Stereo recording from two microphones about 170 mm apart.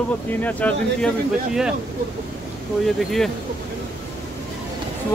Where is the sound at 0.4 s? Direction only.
10° left (ahead or behind).